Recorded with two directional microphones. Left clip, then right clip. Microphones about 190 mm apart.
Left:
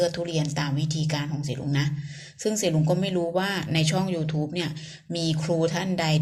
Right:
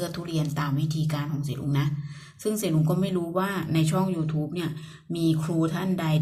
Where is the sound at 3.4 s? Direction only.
15° left (ahead or behind).